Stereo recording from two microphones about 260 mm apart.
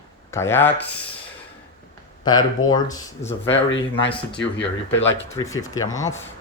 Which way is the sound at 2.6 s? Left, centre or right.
Left.